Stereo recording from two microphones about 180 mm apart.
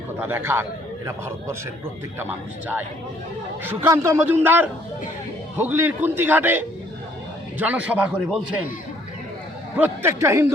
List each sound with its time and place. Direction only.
0.2 s a man's voice: 10° right (ahead or behind)
9.7 s a man's voice: 10° right (ahead or behind)